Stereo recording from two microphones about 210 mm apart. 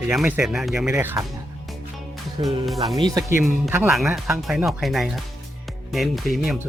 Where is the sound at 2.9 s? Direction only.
20° right (ahead or behind).